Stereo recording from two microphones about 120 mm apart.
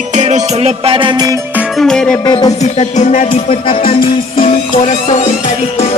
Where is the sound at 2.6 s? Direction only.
75° left (ahead or behind).